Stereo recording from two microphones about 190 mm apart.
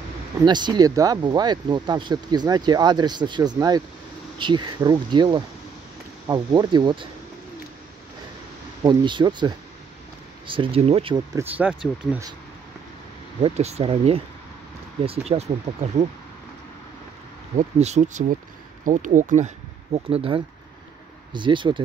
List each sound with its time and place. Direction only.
0.5 s speech: 25° right (ahead or behind)
8.8 s speech: 25° right (ahead or behind)
11.3 s speech: 10° right (ahead or behind)
13.4 s speech: 35° right (ahead or behind)
17.6 s speech: 35° right (ahead or behind)